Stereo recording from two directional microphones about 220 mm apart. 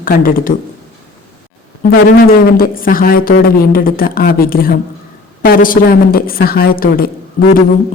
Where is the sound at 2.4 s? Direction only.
40° left (ahead or behind).